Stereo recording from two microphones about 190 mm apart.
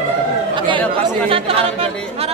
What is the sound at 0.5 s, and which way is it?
Speech, 25° right (ahead or behind).